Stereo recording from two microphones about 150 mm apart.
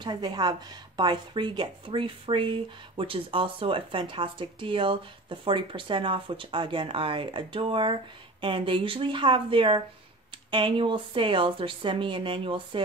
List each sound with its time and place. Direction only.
0.0 s speech: 30° right (ahead or behind)